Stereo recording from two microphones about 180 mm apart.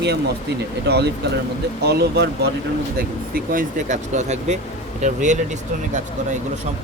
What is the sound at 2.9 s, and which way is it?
Speech, 55° right (ahead or behind).